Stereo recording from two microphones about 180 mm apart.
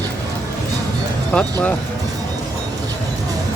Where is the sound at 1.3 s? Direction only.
5° left (ahead or behind).